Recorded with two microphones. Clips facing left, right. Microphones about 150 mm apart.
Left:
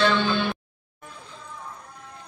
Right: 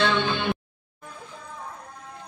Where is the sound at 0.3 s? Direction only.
20° right (ahead or behind).